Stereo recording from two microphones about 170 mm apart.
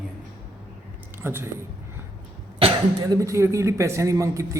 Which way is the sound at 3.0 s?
20° right (ahead or behind).